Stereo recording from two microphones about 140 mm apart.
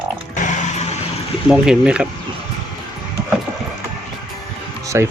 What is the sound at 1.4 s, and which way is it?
Speech, 5° right (ahead or behind).